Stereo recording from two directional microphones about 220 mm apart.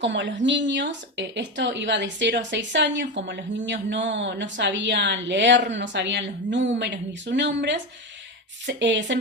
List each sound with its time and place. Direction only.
0.0 s a woman's voice: 55° right (ahead or behind)